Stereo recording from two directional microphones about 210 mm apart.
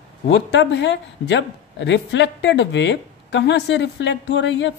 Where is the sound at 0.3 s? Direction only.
55° left (ahead or behind).